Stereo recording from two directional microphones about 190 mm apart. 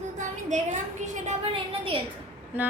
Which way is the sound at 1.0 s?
40° right (ahead or behind).